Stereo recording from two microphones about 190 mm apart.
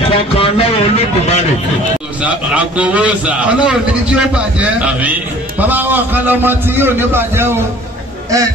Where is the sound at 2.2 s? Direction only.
5° right (ahead or behind).